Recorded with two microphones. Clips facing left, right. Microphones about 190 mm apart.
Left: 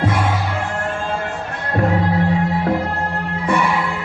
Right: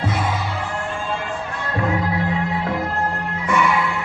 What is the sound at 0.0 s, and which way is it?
Music, 50° left (ahead or behind).